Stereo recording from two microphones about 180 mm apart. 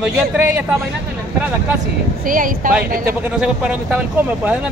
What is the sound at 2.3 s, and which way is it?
Speech, 50° right (ahead or behind).